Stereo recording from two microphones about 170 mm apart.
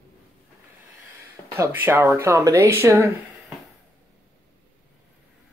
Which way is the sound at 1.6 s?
15° right (ahead or behind).